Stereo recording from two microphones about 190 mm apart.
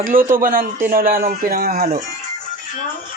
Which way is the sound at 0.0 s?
45° right (ahead or behind).